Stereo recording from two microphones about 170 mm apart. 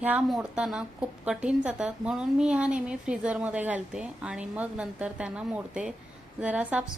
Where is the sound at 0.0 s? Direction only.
5° right (ahead or behind).